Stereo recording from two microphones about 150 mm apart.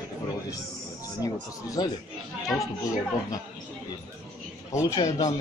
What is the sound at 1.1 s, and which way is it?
Speech, 25° left (ahead or behind).